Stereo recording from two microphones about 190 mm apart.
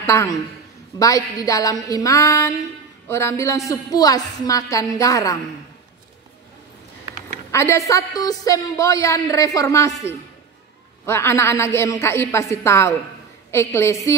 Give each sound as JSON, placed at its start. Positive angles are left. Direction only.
{"t": 0.0, "sound": "a woman's voice", "side_deg": 15}
{"t": 7.5, "sound": "a woman's voice", "side_deg": 15}
{"t": 11.1, "sound": "a woman's voice", "side_deg": 15}